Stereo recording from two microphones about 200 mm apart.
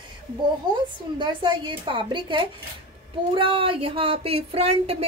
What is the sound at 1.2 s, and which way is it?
A woman's voice, 25° right (ahead or behind).